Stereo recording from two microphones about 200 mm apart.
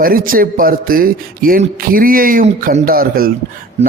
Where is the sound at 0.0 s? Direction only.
45° right (ahead or behind).